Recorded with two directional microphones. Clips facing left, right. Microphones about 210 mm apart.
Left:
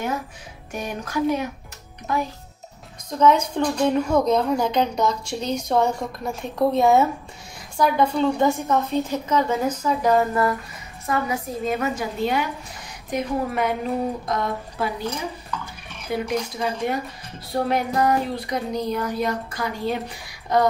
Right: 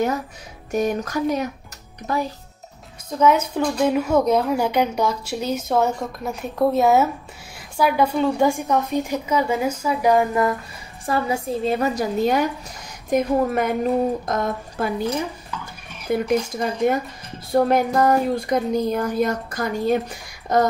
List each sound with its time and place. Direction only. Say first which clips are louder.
0.7 s a woman's voice: right 9 dB; 40° right (ahead or behind)
3.2 s a woman's voice: even; 5° right (ahead or behind)
11.1 s a woman's voice: right 3 dB; 30° right (ahead or behind); by 14.9 s 50° right (ahead or behind)
16.1 s speech: right 5 dB; 50° right (ahead or behind)